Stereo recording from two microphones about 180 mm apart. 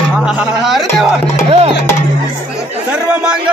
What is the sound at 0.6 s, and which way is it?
Speech, centre (ahead or behind).